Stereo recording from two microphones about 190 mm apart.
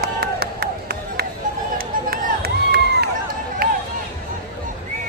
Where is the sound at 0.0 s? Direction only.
55° right (ahead or behind).